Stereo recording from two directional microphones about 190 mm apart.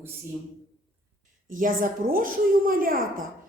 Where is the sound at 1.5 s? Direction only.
45° right (ahead or behind).